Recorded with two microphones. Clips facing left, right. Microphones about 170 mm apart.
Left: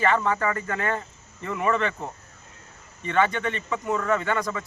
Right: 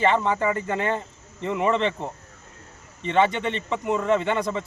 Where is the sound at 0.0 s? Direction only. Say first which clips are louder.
Right 2 dB; 20° right (ahead or behind).